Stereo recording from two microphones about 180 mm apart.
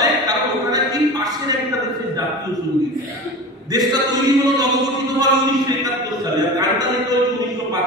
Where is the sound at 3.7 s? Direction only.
20° right (ahead or behind).